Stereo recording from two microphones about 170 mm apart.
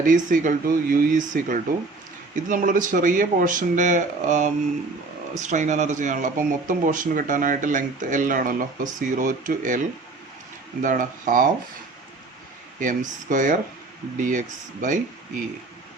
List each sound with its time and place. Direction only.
0.0 s speech: 50° right (ahead or behind)
10.8 s speech: 50° right (ahead or behind)
12.8 s speech: 50° right (ahead or behind)